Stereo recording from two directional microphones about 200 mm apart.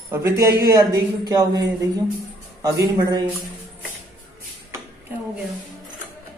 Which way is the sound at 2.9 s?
20° right (ahead or behind).